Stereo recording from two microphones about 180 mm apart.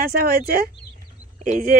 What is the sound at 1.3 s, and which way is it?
Speech, 50° right (ahead or behind).